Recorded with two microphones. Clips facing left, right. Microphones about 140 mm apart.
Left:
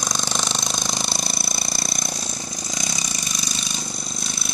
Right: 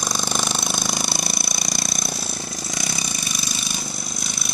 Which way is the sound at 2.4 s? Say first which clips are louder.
Right 1 dB; 20° left (ahead or behind).